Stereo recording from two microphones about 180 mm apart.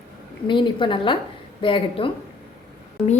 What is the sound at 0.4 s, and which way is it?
A woman's voice, 25° left (ahead or behind).